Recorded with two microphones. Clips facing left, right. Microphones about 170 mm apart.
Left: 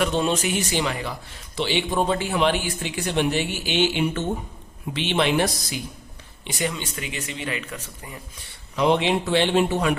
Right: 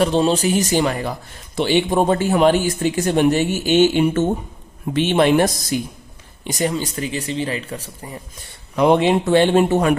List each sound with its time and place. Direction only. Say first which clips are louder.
0.0 s a man's voice: right 6 dB; 35° right (ahead or behind)
8.7 s a man's voice: right 6 dB; 50° right (ahead or behind)